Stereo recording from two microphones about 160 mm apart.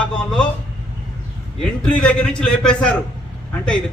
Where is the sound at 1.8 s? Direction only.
5° left (ahead or behind).